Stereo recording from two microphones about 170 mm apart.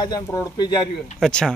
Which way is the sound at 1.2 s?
5° left (ahead or behind).